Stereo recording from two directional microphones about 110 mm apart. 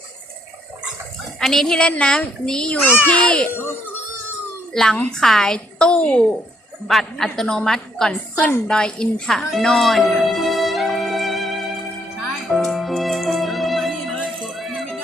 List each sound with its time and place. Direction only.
1.4 s speech: 5° left (ahead or behind)
4.7 s a woman's voice: 5° left (ahead or behind)
8.4 s a woman's voice: 20° left (ahead or behind)
8.7 s music: 10° left (ahead or behind)